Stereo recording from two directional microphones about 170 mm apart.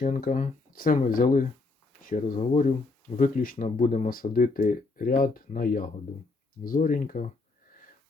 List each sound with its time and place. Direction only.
0.0 s speech: 50° left (ahead or behind)